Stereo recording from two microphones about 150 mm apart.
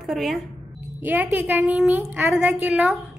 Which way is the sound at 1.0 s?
10° right (ahead or behind).